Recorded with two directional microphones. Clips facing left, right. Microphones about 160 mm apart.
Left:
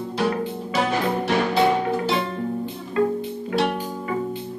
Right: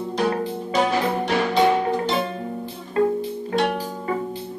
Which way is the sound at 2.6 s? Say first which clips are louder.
Right 3 dB; 35° right (ahead or behind).